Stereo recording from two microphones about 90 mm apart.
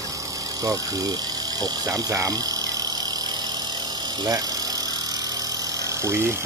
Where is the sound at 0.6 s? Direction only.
40° right (ahead or behind).